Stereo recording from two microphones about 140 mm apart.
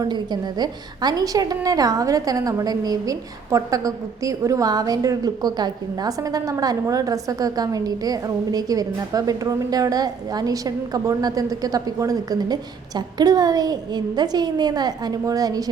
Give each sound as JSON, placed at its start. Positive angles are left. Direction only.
{"t": 0.0, "sound": "a woman's voice", "side_deg": -30}